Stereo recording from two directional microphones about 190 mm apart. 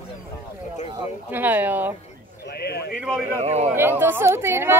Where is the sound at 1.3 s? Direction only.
10° right (ahead or behind).